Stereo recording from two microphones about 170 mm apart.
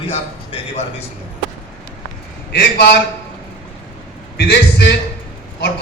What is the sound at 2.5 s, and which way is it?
Speech, 75° left (ahead or behind).